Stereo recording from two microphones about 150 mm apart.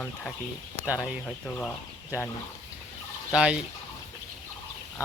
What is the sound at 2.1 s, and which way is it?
Speech, 15° right (ahead or behind).